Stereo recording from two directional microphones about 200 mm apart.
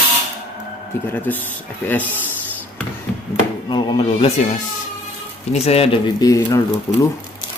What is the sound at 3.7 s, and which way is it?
Speech, 20° left (ahead or behind).